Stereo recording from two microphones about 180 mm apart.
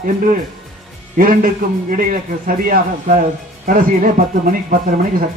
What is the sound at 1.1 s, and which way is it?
Speech, 50° right (ahead or behind).